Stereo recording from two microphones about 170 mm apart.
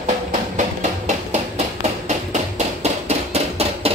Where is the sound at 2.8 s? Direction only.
40° right (ahead or behind).